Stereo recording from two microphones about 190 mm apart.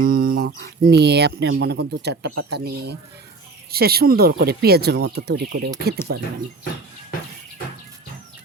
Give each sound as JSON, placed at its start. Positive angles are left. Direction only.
{"t": 0.0, "sound": "speech", "side_deg": -45}